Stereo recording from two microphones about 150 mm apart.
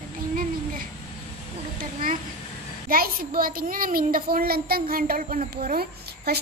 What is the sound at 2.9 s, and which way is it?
A child's voice, 75° right (ahead or behind).